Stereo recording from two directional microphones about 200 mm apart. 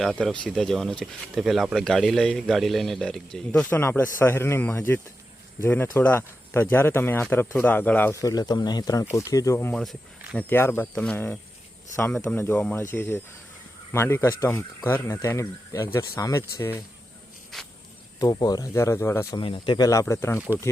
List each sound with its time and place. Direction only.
0.0 s speech: centre (ahead or behind)
9.8 s speech: centre (ahead or behind)
10.5 s speech: 10° left (ahead or behind)
17.5 s a sound: centre (ahead or behind)
18.2 s speech: 20° left (ahead or behind)
19.4 s speech: 25° left (ahead or behind)